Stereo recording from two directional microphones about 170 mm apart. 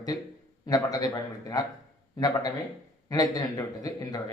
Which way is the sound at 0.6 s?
20° left (ahead or behind).